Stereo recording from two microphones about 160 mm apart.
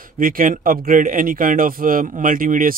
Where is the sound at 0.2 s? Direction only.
60° right (ahead or behind).